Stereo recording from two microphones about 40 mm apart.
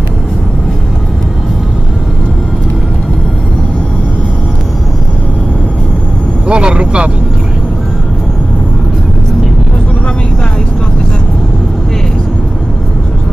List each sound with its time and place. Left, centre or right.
6.4 s vehicle: right